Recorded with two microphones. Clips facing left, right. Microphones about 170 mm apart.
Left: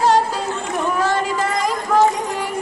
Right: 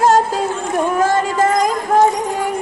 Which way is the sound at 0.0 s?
45° right (ahead or behind).